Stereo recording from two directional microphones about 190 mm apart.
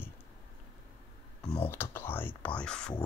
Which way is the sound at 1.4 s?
30° left (ahead or behind).